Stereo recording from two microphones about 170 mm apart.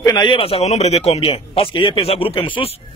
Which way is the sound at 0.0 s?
25° left (ahead or behind).